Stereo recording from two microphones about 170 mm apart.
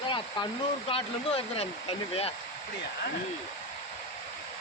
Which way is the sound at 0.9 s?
35° left (ahead or behind).